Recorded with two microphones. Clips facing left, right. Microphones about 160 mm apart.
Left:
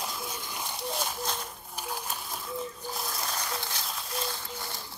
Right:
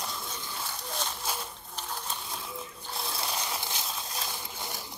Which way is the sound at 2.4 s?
5° right (ahead or behind).